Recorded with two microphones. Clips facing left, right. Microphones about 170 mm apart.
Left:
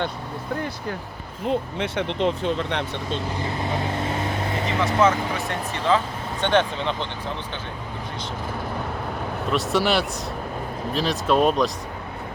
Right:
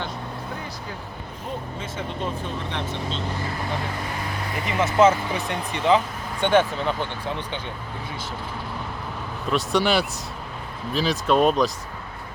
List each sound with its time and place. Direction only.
1.5 s speech: 75° left (ahead or behind)
4.8 s speech: 20° right (ahead or behind)
9.5 s speech: centre (ahead or behind)